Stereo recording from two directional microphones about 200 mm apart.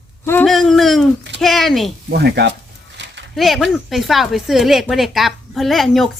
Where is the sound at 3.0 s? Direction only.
65° right (ahead or behind).